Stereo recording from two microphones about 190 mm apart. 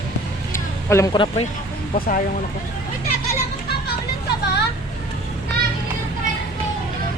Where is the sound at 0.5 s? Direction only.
15° left (ahead or behind).